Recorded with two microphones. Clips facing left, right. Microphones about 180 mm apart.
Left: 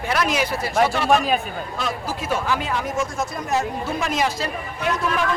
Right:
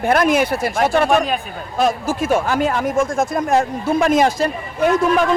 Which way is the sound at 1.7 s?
50° right (ahead or behind).